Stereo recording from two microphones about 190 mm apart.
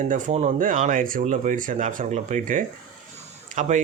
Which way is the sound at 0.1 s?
40° right (ahead or behind).